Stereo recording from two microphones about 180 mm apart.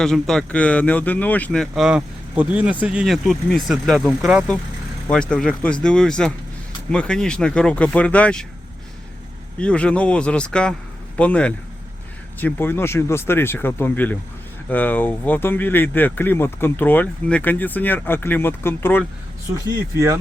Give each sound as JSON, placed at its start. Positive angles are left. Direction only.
{"t": 0.0, "sound": "speech", "side_deg": 0}
{"t": 9.6, "sound": "speech", "side_deg": 5}
{"t": 19.5, "sound": "speech", "side_deg": -20}